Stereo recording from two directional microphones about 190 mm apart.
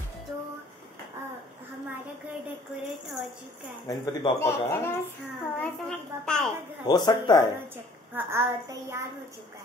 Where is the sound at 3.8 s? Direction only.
15° left (ahead or behind).